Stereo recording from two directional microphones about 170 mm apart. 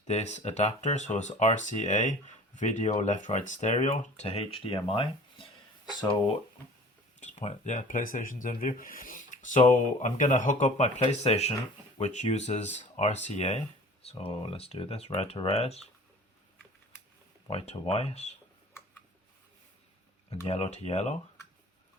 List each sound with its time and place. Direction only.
0.1 s speech: 40° left (ahead or behind); by 6.3 s 25° left (ahead or behind)
7.2 s speech: 40° left (ahead or behind)
17.5 s speech: 35° left (ahead or behind)
20.5 s speech: 40° left (ahead or behind)